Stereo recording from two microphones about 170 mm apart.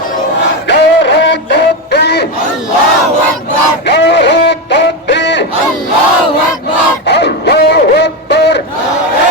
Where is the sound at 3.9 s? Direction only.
85° left.